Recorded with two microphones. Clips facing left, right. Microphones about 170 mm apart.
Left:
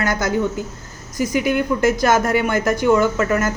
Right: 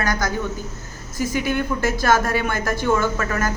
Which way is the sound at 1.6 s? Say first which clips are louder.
Left 5 dB; 20° left (ahead or behind).